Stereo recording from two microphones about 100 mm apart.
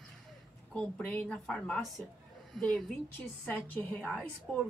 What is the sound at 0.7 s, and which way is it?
A woman's voice, 10° left (ahead or behind).